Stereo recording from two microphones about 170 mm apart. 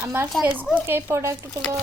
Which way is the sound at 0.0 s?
15° right (ahead or behind).